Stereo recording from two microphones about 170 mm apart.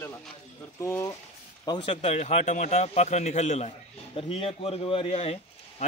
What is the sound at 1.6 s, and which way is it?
A man's voice, 30° left (ahead or behind).